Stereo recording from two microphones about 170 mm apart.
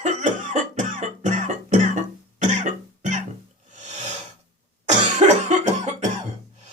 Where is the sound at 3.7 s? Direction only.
45° right (ahead or behind).